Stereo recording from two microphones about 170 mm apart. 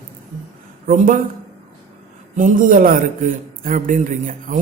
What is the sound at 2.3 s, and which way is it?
A man's voice, 50° right (ahead or behind).